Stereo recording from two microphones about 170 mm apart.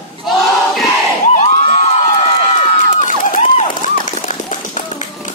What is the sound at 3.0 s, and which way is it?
Run, 45° left (ahead or behind).